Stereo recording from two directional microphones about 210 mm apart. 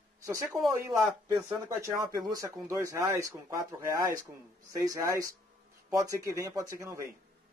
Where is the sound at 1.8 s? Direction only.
15° right (ahead or behind).